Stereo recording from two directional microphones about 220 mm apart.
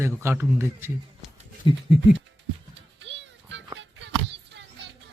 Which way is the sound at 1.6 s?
20° left (ahead or behind).